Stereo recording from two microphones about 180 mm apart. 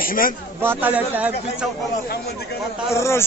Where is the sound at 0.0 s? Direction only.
50° left (ahead or behind).